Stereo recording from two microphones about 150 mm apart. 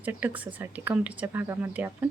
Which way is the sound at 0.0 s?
10° right (ahead or behind).